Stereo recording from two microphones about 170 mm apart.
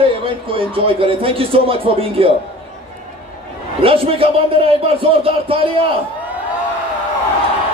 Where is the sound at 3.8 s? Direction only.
35° right (ahead or behind).